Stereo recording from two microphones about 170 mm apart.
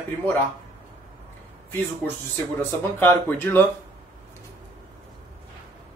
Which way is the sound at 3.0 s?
10° left (ahead or behind).